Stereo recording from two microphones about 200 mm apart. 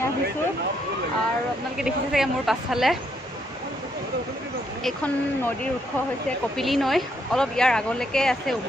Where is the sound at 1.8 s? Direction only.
Centre (ahead or behind).